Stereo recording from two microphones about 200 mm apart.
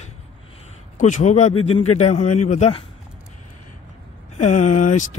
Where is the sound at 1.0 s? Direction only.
40° left (ahead or behind).